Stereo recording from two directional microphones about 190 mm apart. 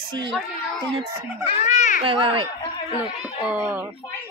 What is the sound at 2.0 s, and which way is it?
Speech, 25° right (ahead or behind).